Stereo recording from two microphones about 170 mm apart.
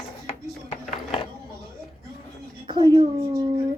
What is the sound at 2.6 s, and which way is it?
Speech, 25° right (ahead or behind).